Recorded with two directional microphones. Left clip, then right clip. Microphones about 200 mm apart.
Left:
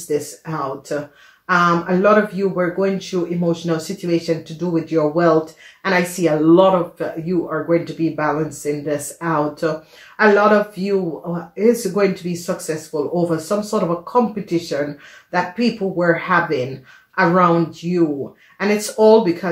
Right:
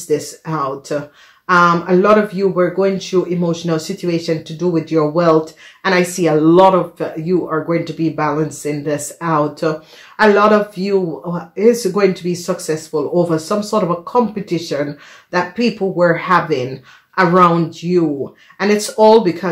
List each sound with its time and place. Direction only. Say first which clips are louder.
0.1 s speech: right 4 dB; 45° right (ahead or behind)